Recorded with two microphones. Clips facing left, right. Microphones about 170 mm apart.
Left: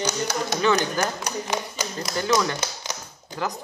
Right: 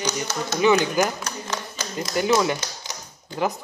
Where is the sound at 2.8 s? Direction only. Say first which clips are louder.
Left 3 dB; 20° left (ahead or behind).